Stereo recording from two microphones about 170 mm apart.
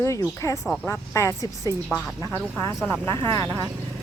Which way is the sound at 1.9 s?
5° left (ahead or behind).